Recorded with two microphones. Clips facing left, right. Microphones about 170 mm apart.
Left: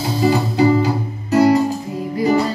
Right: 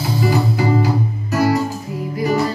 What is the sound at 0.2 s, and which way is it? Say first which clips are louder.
Music: left 4 dB; 25° left (ahead or behind).